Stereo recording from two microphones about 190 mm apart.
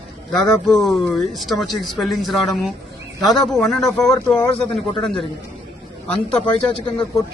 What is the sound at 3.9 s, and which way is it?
Speech, 15° left (ahead or behind).